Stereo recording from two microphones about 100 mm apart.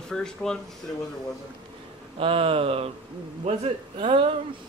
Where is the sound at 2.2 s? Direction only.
70° right (ahead or behind).